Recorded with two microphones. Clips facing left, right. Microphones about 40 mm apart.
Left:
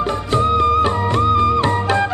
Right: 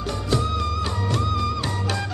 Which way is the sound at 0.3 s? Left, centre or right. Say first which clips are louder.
Left 10 dB; left.